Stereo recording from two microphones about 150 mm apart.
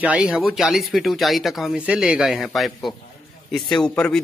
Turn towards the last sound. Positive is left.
turn(degrees=5)  # may be behind; listen again after turning